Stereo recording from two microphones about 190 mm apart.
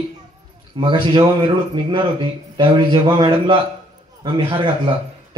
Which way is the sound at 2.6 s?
25° right (ahead or behind).